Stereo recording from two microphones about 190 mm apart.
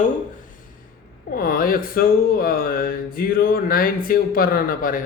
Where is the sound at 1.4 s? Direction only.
50° left (ahead or behind).